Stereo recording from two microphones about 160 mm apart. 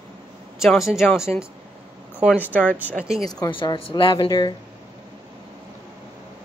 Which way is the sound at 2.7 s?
5° right (ahead or behind).